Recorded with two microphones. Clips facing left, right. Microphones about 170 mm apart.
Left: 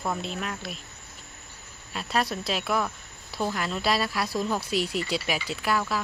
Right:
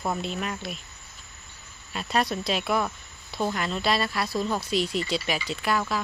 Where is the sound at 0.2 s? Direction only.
Centre (ahead or behind).